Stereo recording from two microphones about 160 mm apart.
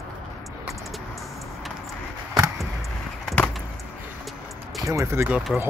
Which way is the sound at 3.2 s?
Centre (ahead or behind).